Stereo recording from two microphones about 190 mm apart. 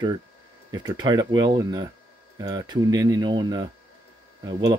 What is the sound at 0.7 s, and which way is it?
Speech, 20° right (ahead or behind).